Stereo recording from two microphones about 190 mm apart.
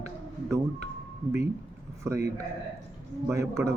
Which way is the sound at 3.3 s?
15° right (ahead or behind).